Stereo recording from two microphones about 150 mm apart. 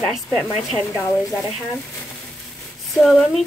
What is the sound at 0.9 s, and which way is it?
Speech, 20° left (ahead or behind).